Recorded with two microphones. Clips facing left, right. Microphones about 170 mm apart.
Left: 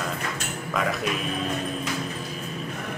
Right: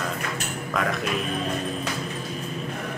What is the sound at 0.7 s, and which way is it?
Speech, centre (ahead or behind).